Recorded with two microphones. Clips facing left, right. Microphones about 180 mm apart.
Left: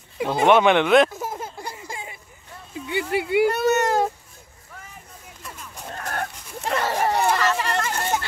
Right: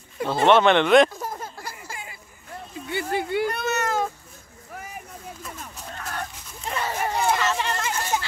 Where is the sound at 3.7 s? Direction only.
30° left (ahead or behind).